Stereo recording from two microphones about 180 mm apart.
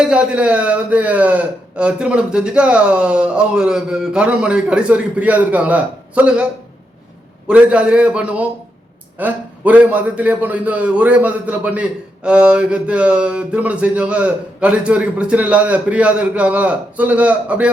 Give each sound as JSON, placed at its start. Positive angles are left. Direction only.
{"t": 0.0, "sound": "a man's voice", "side_deg": -5}
{"t": 7.4, "sound": "a man's voice", "side_deg": -5}